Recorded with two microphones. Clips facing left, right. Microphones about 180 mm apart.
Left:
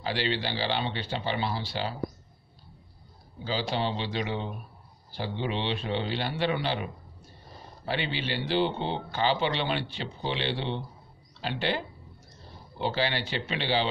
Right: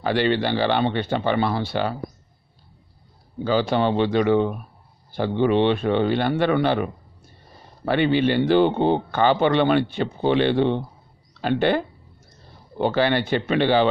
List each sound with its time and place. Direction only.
0.0 s speech: 55° right (ahead or behind)
3.4 s speech: 55° right (ahead or behind)